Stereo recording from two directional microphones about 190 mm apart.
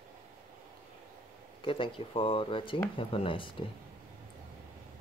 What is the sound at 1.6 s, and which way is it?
Speech, 25° left (ahead or behind).